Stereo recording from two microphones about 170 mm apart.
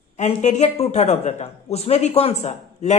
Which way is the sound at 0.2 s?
40° left (ahead or behind).